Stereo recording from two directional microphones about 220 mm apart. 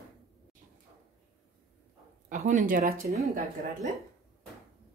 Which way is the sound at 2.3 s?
35° right (ahead or behind).